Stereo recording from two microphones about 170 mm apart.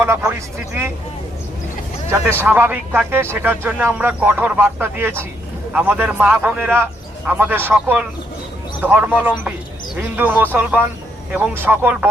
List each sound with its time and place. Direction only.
0.0 s speech: 10° right (ahead or behind)
2.0 s speech: 10° right (ahead or behind)